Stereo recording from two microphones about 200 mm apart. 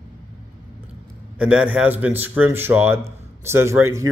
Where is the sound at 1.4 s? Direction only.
5° right (ahead or behind).